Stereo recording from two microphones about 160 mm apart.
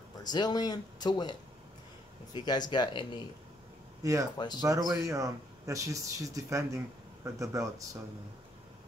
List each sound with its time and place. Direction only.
0.2 s speech: 25° left (ahead or behind)
2.3 s speech: 25° left (ahead or behind)
4.0 s speech: 20° right (ahead or behind)